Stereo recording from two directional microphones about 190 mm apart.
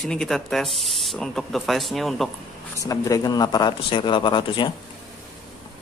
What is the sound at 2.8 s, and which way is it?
Speech, 15° left (ahead or behind).